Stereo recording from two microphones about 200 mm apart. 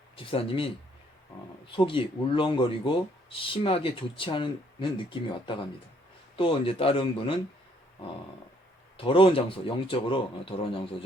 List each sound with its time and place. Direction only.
0.2 s speech: 25° left (ahead or behind)
9.0 s speech: 25° left (ahead or behind)